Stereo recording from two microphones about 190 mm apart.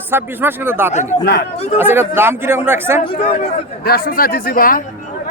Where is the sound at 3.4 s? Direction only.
55° left (ahead or behind).